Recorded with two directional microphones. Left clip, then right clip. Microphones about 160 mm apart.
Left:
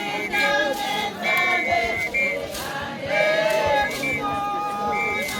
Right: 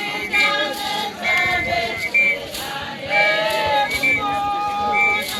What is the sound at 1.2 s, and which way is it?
Choir, 20° left (ahead or behind).